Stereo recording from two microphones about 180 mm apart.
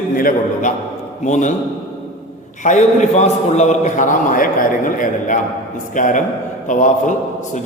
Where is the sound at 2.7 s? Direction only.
40° left (ahead or behind).